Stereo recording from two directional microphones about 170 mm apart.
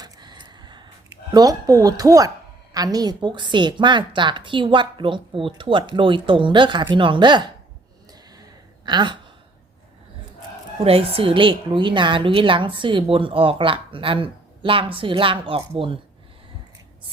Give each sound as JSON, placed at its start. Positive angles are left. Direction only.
{"t": 0.0, "sound": "a sound", "side_deg": -25}
{"t": 1.3, "sound": "a woman's voice", "side_deg": -20}
{"t": 8.9, "sound": "a woman's voice", "side_deg": -25}
{"t": 10.8, "sound": "a woman's voice", "side_deg": -35}